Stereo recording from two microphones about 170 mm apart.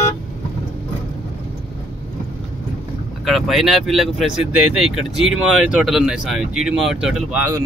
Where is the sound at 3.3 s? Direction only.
Centre (ahead or behind).